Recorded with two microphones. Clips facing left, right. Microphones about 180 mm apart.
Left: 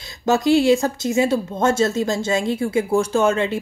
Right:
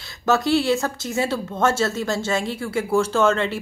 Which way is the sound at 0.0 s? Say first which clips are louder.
Left 2 dB; 15° left (ahead or behind).